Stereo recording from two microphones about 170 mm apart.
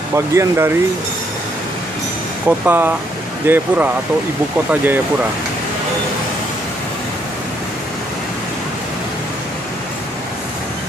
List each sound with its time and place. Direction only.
0.1 s speech: 15° right (ahead or behind)
2.4 s speech: 10° right (ahead or behind)